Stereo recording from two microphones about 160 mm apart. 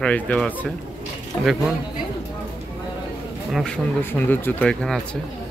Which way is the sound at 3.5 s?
5° left (ahead or behind).